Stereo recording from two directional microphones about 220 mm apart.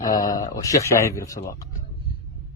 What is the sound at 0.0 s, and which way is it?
Speech, 15° left (ahead or behind).